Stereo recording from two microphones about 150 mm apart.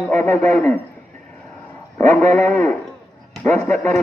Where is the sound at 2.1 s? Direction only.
20° left (ahead or behind).